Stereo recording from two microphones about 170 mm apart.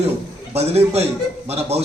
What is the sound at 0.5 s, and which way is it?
A man's voice, 40° right (ahead or behind).